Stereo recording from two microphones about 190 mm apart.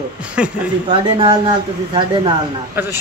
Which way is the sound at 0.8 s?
30° right (ahead or behind).